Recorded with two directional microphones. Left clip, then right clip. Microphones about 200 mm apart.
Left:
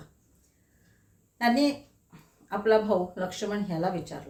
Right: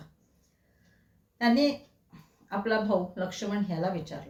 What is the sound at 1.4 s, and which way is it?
A woman's voice, 15° left (ahead or behind).